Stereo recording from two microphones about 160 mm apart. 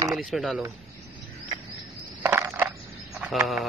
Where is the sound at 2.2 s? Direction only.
15° right (ahead or behind).